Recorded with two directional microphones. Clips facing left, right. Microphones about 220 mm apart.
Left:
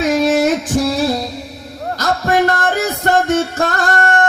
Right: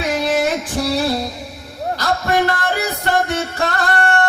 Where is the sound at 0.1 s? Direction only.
45° left (ahead or behind).